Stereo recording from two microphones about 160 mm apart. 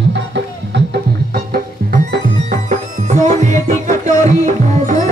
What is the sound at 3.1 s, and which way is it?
Music, 45° right (ahead or behind).